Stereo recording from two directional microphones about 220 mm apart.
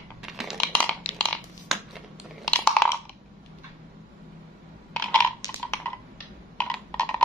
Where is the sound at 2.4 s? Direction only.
5° left (ahead or behind).